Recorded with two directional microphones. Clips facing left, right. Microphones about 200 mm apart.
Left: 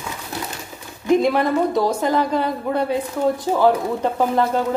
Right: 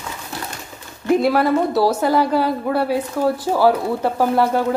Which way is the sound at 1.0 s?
5° right (ahead or behind).